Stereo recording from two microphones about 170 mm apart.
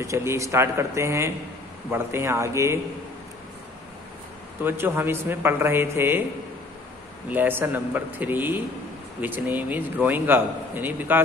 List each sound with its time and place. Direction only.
0.0 s a man's voice: 15° right (ahead or behind)
4.6 s a man's voice: 15° right (ahead or behind)
7.2 s a man's voice: 10° right (ahead or behind)